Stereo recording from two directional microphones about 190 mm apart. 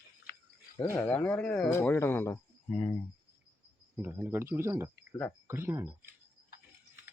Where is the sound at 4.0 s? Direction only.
10° right (ahead or behind).